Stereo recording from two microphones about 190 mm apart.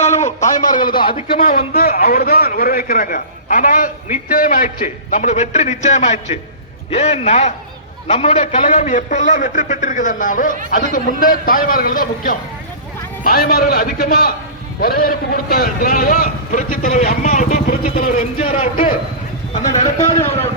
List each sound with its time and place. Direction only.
0.0 s a sound: 35° left (ahead or behind)
1.0 s speech: 25° left (ahead or behind)
1.4 s a man's voice: 50° left (ahead or behind)
18.3 s a man's voice: 30° left (ahead or behind)
20.0 s a man's voice: 15° left (ahead or behind)